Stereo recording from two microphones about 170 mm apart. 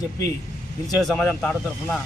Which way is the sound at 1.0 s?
5° left (ahead or behind).